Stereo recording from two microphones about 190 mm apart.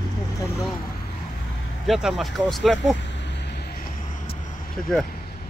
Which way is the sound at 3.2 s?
65° left (ahead or behind).